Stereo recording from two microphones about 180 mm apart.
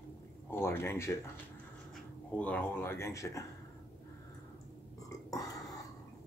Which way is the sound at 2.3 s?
10° left (ahead or behind).